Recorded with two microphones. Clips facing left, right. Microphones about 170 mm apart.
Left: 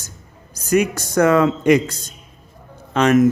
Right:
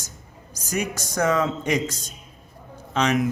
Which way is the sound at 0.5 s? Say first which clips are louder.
Left 10 dB; 60° left (ahead or behind).